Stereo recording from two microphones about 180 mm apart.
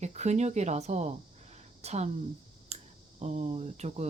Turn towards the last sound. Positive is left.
turn(degrees=-40)  # may be behind; listen again after turning